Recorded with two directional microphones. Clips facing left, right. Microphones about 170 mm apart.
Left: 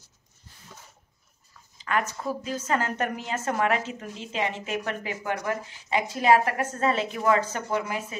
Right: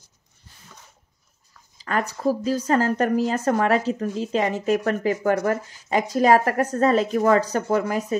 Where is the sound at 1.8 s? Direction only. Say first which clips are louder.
Right 3 dB; 35° right (ahead or behind).